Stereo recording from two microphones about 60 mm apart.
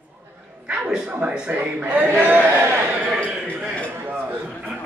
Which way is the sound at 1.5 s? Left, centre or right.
Right.